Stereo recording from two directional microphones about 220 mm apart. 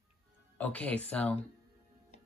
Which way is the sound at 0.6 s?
5° left (ahead or behind).